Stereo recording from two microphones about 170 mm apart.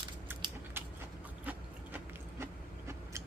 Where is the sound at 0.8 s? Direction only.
15° right (ahead or behind).